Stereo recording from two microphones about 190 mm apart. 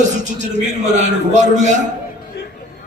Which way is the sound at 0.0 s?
40° right (ahead or behind).